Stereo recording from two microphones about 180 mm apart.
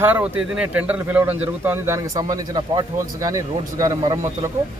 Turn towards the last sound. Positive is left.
turn(degrees=-20)  # may be behind; listen again after turning